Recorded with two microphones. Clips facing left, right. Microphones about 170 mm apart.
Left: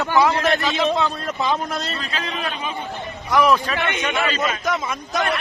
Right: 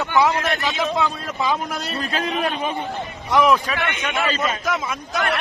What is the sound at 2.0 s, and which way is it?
Speech, 50° right (ahead or behind).